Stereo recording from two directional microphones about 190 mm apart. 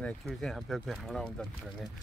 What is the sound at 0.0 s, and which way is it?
Speech, 5° left (ahead or behind).